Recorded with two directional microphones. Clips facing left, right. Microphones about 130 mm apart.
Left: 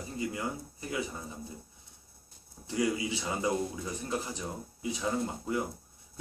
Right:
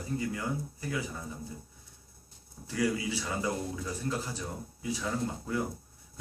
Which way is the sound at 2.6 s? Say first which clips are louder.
Even; 20° left (ahead or behind).